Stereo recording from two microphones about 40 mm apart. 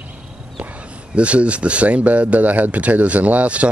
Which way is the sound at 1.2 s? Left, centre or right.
Right.